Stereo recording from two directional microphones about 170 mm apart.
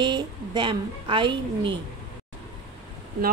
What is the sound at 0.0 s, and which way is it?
A woman's voice, 25° right (ahead or behind).